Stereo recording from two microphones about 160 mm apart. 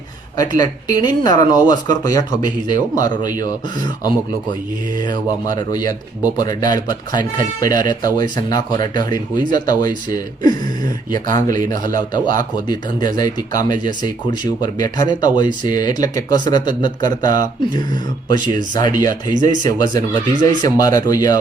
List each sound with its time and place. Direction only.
0.5 s speech: 25° left (ahead or behind)
19.3 s speech: 55° right (ahead or behind)
19.6 s speech: 25° left (ahead or behind)